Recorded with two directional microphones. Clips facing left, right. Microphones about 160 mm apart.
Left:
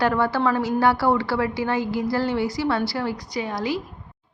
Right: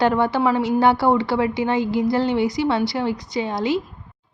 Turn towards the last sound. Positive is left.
turn(degrees=-25)  # may be behind; listen again after turning